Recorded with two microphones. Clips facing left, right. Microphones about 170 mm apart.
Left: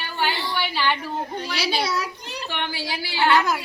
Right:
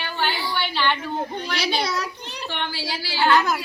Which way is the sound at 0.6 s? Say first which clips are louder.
Right 1 dB; 10° left (ahead or behind).